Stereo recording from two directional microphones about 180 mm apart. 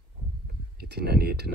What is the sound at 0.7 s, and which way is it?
Speech, 65° right (ahead or behind).